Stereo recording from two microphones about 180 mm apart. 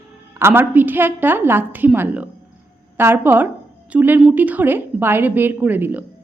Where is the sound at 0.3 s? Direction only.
15° right (ahead or behind).